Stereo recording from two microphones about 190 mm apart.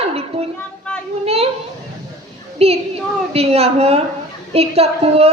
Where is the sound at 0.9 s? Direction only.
5° left (ahead or behind).